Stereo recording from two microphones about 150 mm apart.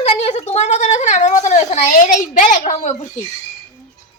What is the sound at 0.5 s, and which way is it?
Speech, 50° left (ahead or behind).